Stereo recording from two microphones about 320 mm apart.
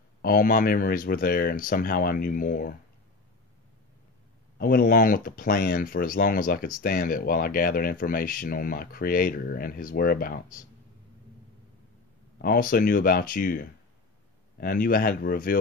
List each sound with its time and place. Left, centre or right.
0.2 s speech: left
4.6 s speech: left
12.4 s speech: left